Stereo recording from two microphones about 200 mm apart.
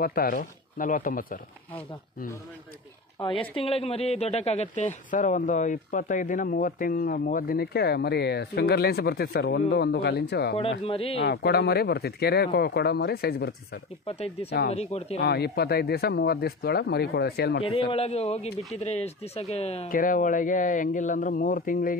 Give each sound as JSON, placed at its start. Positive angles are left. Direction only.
{"t": 0.0, "sound": "speech", "side_deg": 50}
{"t": 3.2, "sound": "speech", "side_deg": 25}
{"t": 10.5, "sound": "speech", "side_deg": 30}
{"t": 11.1, "sound": "speech", "side_deg": 55}
{"t": 14.0, "sound": "a man's voice", "side_deg": 30}
{"t": 15.2, "sound": "speech", "side_deg": 55}
{"t": 17.6, "sound": "a man's voice", "side_deg": 30}
{"t": 19.9, "sound": "a man's voice", "side_deg": 45}